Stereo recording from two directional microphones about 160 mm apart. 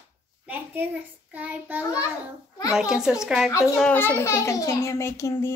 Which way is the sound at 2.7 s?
5° right (ahead or behind).